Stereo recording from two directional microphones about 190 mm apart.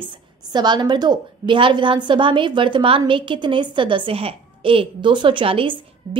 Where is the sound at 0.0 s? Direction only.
25° right (ahead or behind).